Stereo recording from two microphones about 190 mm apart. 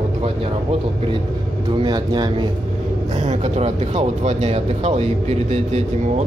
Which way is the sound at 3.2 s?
35° right (ahead or behind).